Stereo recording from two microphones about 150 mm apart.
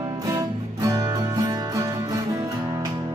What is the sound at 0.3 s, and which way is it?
Music, 25° right (ahead or behind).